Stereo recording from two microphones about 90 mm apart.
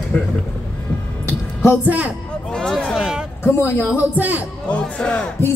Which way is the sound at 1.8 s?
15° right (ahead or behind).